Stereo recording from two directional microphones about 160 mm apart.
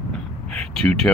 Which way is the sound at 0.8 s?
5° left (ahead or behind).